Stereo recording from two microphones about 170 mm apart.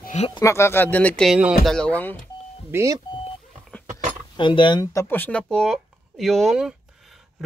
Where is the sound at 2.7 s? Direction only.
15° right (ahead or behind).